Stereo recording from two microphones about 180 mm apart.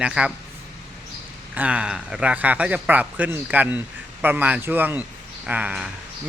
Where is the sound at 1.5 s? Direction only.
5° right (ahead or behind).